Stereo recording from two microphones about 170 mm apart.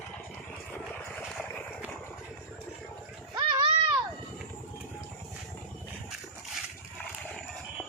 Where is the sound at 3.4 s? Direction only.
25° right (ahead or behind).